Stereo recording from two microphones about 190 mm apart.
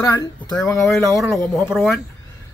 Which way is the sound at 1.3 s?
5° left (ahead or behind).